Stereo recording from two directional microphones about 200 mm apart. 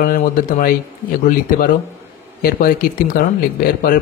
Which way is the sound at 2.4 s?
45° left (ahead or behind).